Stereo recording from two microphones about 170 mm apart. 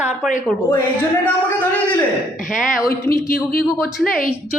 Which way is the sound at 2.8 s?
60° left (ahead or behind).